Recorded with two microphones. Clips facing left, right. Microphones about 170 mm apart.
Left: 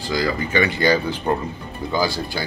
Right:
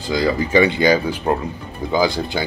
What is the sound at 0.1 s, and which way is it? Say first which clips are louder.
Speech: right 5 dB; 30° right (ahead or behind).